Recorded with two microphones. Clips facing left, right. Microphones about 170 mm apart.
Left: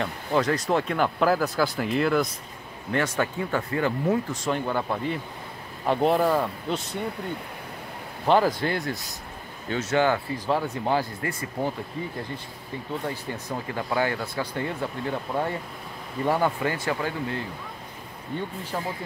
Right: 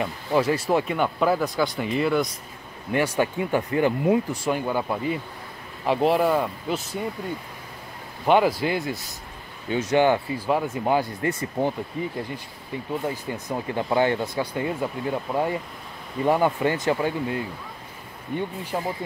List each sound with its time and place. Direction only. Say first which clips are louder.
0.0 s speech: right 2 dB; 10° right (ahead or behind)
2.9 s speech: right 3 dB; 15° right (ahead or behind)
8.3 s speech: right 2 dB; 5° right (ahead or behind); by 11.7 s 20° right (ahead or behind)
13.0 s speech: right 3 dB; 10° right (ahead or behind)